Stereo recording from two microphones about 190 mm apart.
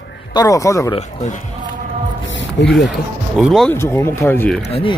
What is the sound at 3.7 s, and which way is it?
Speech, 15° left (ahead or behind).